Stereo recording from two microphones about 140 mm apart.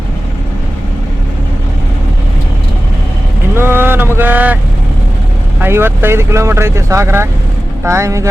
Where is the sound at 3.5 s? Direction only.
15° right (ahead or behind).